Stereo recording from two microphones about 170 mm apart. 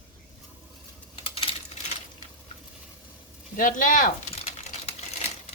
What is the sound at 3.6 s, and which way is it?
Speech, 50° left (ahead or behind).